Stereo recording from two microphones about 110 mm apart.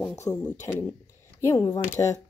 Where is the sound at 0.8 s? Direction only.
25° left (ahead or behind).